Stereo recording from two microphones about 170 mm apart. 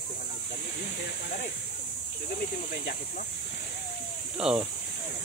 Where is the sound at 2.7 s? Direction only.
65° left (ahead or behind).